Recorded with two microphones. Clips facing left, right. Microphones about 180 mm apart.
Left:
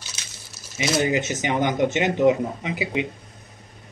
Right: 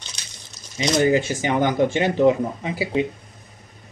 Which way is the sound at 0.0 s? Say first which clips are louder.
Even; 5° left (ahead or behind).